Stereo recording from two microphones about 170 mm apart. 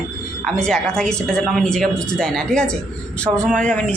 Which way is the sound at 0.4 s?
5° left (ahead or behind).